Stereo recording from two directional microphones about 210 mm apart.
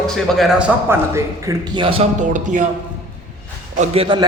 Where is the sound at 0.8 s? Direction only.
15° right (ahead or behind).